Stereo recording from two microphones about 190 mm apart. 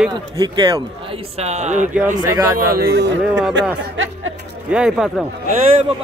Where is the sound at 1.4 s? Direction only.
35° right (ahead or behind).